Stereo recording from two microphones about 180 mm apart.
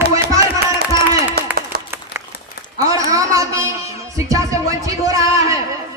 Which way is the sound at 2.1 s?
65° left (ahead or behind).